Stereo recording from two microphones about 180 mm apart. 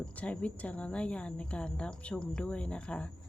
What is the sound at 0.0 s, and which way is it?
Speech, 5° left (ahead or behind).